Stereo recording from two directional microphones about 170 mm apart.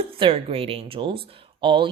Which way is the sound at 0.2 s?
35° right (ahead or behind).